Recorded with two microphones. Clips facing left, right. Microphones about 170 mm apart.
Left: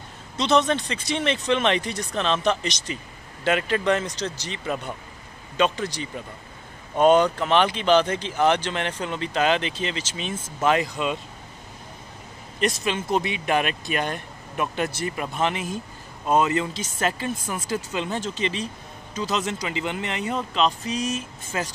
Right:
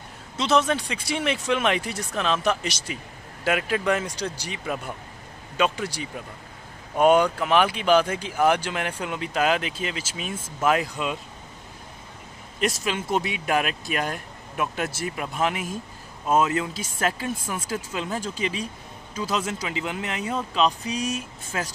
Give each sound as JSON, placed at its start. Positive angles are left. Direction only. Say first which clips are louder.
{"t": 0.4, "sound": "speech", "louder": "left 1 dB", "side_deg": -5}
{"t": 12.5, "sound": "speech", "louder": "left 1 dB", "side_deg": -5}
{"t": 21.5, "sound": "speech", "louder": "left 1 dB", "side_deg": 0}